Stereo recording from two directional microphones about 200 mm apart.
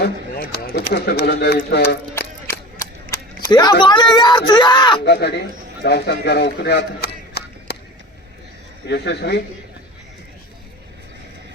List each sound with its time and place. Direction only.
0.0 s speech: 50° left (ahead or behind)
3.1 s speech: 20° left (ahead or behind)
5.0 s a man's voice: 55° left (ahead or behind)
8.9 s speech: 55° left (ahead or behind)